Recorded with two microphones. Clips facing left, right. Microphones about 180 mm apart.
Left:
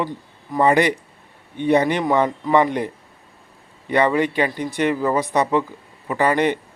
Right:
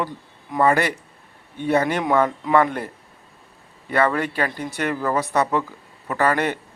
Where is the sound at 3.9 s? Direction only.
15° left (ahead or behind).